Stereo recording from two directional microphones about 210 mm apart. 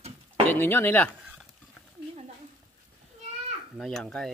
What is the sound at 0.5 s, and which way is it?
Speech, 10° left (ahead or behind).